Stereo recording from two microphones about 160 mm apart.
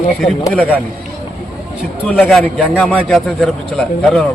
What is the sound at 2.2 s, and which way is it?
A man's voice, centre (ahead or behind).